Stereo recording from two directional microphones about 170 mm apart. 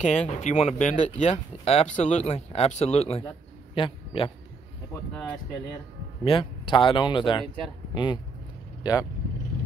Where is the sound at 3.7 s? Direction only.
30° left (ahead or behind).